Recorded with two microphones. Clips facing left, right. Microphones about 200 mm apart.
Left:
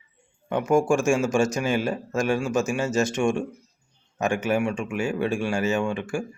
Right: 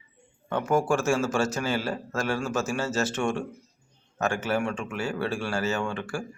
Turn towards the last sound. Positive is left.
turn(degrees=15)  # may be behind; listen again after turning